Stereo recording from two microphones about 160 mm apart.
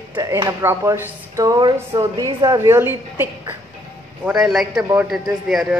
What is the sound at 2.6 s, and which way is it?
A woman's voice, 15° right (ahead or behind).